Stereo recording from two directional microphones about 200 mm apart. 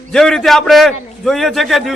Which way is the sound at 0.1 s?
Centre (ahead or behind).